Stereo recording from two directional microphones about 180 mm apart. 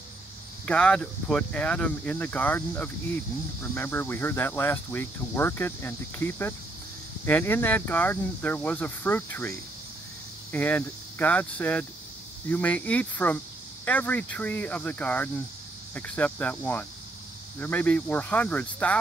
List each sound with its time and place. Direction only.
0.7 s speech: 5° left (ahead or behind)